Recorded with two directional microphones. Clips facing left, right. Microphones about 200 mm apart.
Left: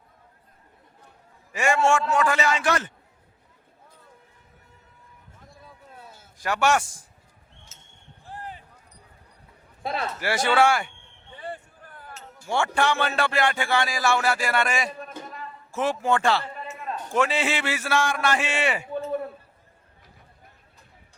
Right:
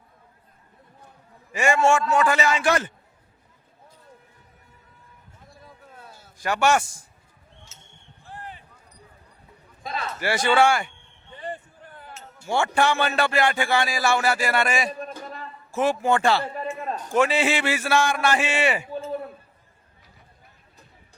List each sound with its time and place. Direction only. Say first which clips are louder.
1.5 s a man's voice: right 2 dB; centre (ahead or behind)
6.4 s speech: right 1 dB; centre (ahead or behind)
7.7 s a sound: right 2 dB; 50° left (ahead or behind)
10.2 s speech: right 2 dB; centre (ahead or behind)
11.5 s basketball bounce: right 2 dB; 25° right (ahead or behind)
12.5 s a man's voice: right 2 dB; 5° right (ahead or behind)
16.4 s a sound: right 7 dB; 40° right (ahead or behind)
17.2 s a man's voice: right 3 dB; 5° right (ahead or behind)